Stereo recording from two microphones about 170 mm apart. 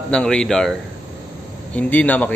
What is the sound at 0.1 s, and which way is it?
Speech, 5° left (ahead or behind).